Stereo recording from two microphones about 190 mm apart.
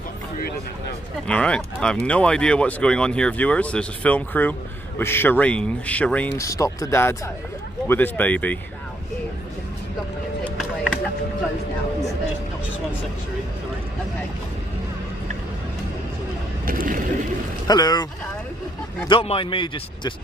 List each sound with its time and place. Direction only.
1.2 s speech: 5° left (ahead or behind)
10.4 s a sound: centre (ahead or behind)
16.6 s boat: 45° right (ahead or behind)
17.6 s a man's voice: 20° left (ahead or behind)
19.0 s a man's voice: 30° left (ahead or behind)